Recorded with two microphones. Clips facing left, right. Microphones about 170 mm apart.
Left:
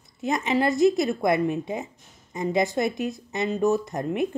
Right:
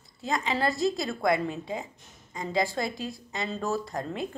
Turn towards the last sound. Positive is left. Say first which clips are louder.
# left 6 dB
turn(degrees=20)  # may be behind; listen again after turning